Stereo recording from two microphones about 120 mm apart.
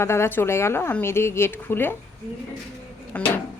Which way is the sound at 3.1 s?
15° left (ahead or behind).